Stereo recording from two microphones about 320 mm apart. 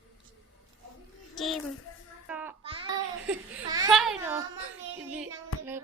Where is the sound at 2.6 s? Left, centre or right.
Centre.